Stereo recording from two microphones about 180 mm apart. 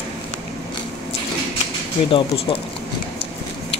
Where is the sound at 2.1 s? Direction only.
30° left (ahead or behind).